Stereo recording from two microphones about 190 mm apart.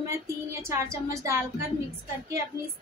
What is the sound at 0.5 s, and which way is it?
Speech, 15° right (ahead or behind).